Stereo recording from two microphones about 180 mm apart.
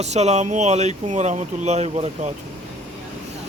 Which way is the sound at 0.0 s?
40° right (ahead or behind).